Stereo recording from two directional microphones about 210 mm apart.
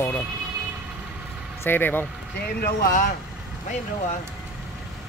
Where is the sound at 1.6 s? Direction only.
10° left (ahead or behind).